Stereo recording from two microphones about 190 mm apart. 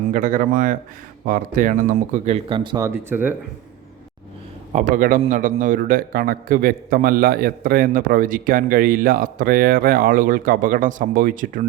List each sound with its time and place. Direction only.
0.1 s a man's voice: 45° right (ahead or behind); by 3.3 s 10° right (ahead or behind)
4.7 s a man's voice: 45° right (ahead or behind)